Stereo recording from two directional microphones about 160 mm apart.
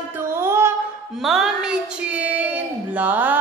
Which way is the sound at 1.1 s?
Centre (ahead or behind).